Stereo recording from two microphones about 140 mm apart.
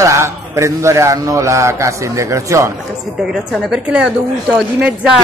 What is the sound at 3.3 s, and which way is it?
Speech, 5° right (ahead or behind).